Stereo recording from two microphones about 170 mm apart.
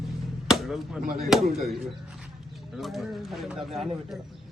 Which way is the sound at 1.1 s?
60° right (ahead or behind).